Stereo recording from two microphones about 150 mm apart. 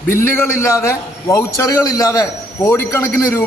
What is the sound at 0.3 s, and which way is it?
A man's voice, 20° left (ahead or behind).